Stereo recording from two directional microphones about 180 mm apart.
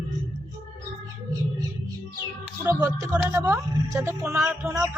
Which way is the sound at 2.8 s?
20° right (ahead or behind).